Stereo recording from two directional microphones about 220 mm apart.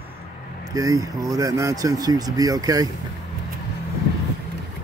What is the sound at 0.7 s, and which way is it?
Speech, 15° right (ahead or behind).